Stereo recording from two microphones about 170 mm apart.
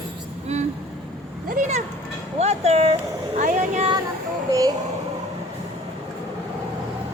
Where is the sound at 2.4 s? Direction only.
40° right (ahead or behind).